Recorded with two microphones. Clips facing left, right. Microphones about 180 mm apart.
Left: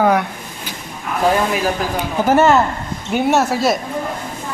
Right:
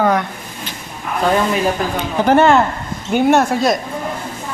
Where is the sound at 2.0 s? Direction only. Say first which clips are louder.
Right 1 dB; 5° left (ahead or behind).